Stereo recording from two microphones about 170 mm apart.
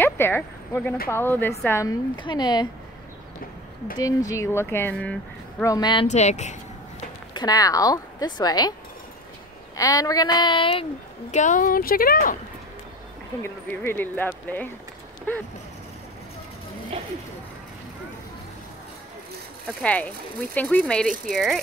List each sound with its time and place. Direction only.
0.0 s a woman's voice: 10° left (ahead or behind)
4.0 s a woman's voice: 20° left (ahead or behind)
5.6 s a woman's voice: 20° left (ahead or behind)
6.0 s speech: 40° left (ahead or behind)
7.3 s a woman's voice: 20° left (ahead or behind)
9.8 s a woman's voice: 20° left (ahead or behind)
11.3 s speech: 50° left (ahead or behind)
13.4 s a woman's voice: 10° left (ahead or behind)
19.8 s a woman's voice: 5° left (ahead or behind)